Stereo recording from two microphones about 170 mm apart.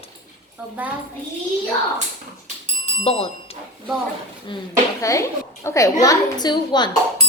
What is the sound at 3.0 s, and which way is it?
Speech, 35° left (ahead or behind).